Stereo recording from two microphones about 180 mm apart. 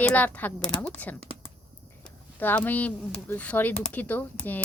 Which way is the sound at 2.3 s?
10° left (ahead or behind).